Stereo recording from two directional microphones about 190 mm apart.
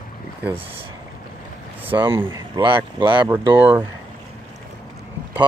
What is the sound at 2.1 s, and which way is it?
Speech, 10° right (ahead or behind).